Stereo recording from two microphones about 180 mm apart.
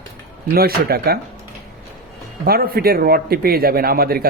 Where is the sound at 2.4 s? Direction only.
55° right (ahead or behind).